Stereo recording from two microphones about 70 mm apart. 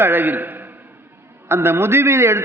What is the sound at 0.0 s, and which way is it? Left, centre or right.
A man's voice, right.